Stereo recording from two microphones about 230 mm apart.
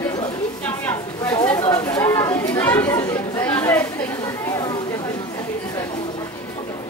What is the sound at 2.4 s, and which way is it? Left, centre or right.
Chatter, centre.